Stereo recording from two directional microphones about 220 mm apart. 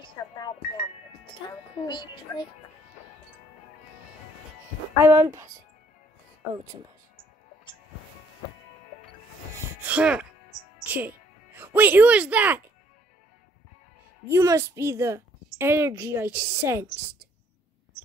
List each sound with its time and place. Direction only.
0.2 s speech: 15° left (ahead or behind)
1.9 s a child's voice: 20° left (ahead or behind)
4.9 s a woman's voice: 10° right (ahead or behind)
6.5 s a woman's voice: 15° right (ahead or behind)
9.8 s music: 5° right (ahead or behind)
10.9 s speech: 10° right (ahead or behind)
14.3 s a woman's voice: 15° right (ahead or behind)